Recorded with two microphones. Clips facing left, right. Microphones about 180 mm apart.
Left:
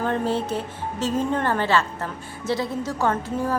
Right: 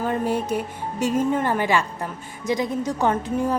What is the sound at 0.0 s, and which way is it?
A woman's voice, 10° right (ahead or behind).